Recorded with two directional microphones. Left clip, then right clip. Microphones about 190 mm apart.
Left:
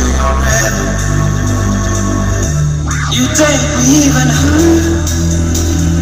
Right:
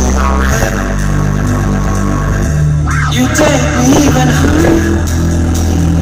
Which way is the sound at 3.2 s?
20° right (ahead or behind).